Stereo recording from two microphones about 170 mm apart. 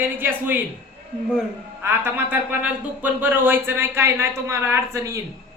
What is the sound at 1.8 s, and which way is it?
Speech, 10° right (ahead or behind).